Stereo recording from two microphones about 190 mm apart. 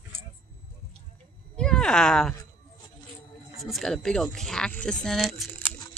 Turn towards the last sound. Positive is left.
turn(degrees=0)  # may be behind; listen again after turning